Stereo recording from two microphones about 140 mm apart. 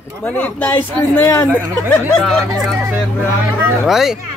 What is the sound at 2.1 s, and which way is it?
Speech, centre (ahead or behind).